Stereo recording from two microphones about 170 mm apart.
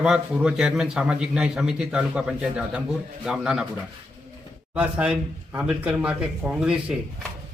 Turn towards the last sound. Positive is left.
turn(degrees=-5)  # may be behind; listen again after turning